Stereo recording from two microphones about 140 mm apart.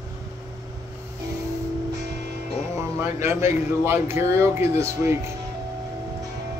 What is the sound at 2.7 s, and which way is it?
Speech, 20° right (ahead or behind).